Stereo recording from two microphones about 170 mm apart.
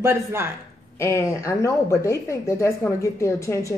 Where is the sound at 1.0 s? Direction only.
15° left (ahead or behind).